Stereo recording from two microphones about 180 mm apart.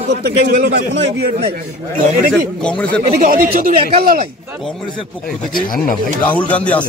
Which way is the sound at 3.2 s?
50° right (ahead or behind).